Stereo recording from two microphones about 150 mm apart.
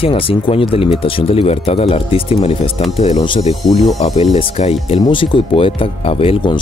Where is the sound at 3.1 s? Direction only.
35° left (ahead or behind).